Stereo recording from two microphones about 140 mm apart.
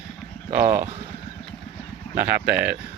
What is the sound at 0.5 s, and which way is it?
Speech, 20° right (ahead or behind).